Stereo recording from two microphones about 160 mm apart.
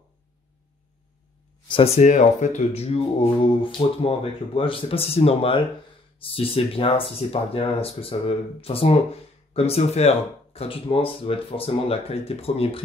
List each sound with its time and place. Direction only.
1.7 s speech: 40° left (ahead or behind)